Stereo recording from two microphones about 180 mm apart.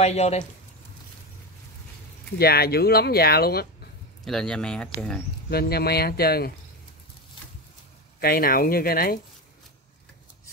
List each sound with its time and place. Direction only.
0.0 s speech: 35° left (ahead or behind)
2.3 s speech: 60° left (ahead or behind)
4.2 s a man's voice: centre (ahead or behind)
5.5 s speech: 60° left (ahead or behind)
8.2 s speech: 55° left (ahead or behind)